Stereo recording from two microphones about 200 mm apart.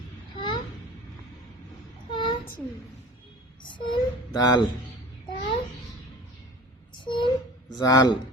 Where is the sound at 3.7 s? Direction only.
25° left (ahead or behind).